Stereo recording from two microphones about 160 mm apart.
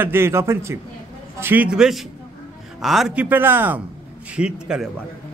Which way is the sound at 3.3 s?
10° right (ahead or behind).